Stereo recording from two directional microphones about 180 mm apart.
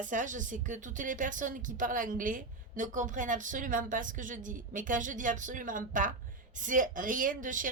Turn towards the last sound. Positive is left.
turn(degrees=-45)  # may be behind; listen again after turning